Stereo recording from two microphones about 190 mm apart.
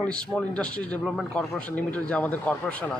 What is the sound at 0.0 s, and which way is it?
Speech, 5° left (ahead or behind).